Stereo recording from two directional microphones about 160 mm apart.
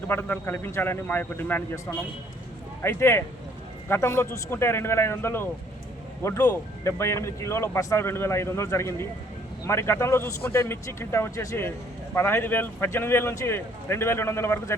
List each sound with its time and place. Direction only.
0.1 s speech: 15° left (ahead or behind)
2.8 s speech: 15° left (ahead or behind)